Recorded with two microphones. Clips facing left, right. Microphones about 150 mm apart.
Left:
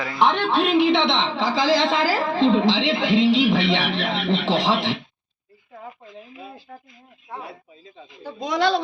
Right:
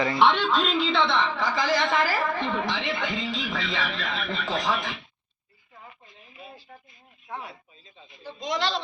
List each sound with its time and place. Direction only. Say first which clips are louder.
0.2 s a man's voice: left 4 dB; 50° left (ahead or behind); by 5.0 s 80° left
5.8 s a sound: left 11 dB; 90° left
7.9 s speech: left 6 dB; 90° left